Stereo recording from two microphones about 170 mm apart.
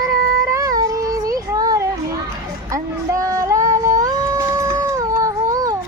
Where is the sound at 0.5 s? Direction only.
20° right (ahead or behind).